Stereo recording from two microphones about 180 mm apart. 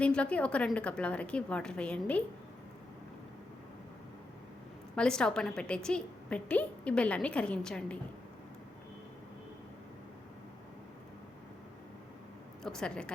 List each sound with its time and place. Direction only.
0.0 s a woman's voice: 5° left (ahead or behind)
4.9 s a woman's voice: 5° left (ahead or behind)
12.6 s a woman's voice: 5° left (ahead or behind)